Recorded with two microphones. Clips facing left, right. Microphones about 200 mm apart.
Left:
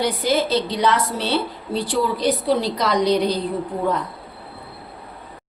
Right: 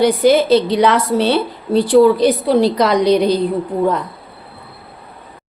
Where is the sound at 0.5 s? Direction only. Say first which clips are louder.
Right 7 dB; 65° right (ahead or behind).